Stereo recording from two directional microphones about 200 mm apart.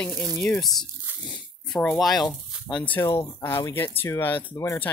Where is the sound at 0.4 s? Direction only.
5° left (ahead or behind).